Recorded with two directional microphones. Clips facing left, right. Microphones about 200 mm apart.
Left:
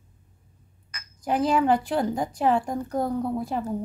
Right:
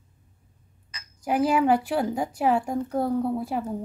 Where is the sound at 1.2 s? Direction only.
10° right (ahead or behind).